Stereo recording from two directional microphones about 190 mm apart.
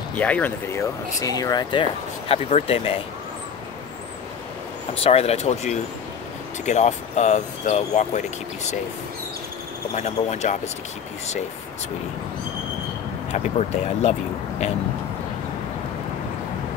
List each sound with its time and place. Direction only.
0.2 s speech: 10° left (ahead or behind); by 3.0 s 30° left (ahead or behind)
4.9 s speech: 30° left (ahead or behind)
9.9 s speech: 35° left (ahead or behind)
13.3 s speech: 35° left (ahead or behind)